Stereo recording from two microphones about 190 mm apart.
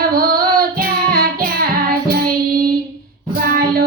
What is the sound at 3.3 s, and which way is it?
Child singing, 50° right (ahead or behind).